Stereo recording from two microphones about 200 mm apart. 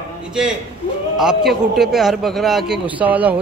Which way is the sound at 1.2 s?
Centre (ahead or behind).